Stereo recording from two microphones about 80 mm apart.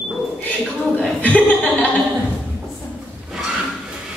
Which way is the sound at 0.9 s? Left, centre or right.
Centre.